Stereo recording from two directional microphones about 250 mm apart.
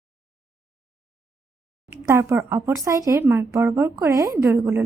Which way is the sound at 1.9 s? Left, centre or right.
Centre.